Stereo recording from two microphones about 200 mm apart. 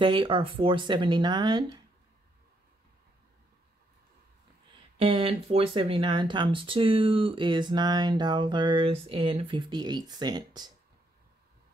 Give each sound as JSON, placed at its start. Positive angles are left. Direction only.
{"t": 0.0, "sound": "speech", "side_deg": -25}
{"t": 4.9, "sound": "speech", "side_deg": -30}